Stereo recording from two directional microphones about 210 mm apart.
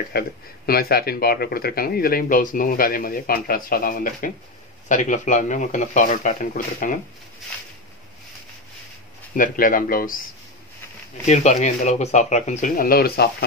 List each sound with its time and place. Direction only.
0.1 s speech: 45° left (ahead or behind)
9.3 s speech: 40° left (ahead or behind)
11.2 s speech: 35° left (ahead or behind)